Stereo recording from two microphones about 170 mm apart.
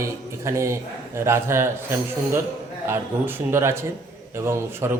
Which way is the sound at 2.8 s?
15° right (ahead or behind).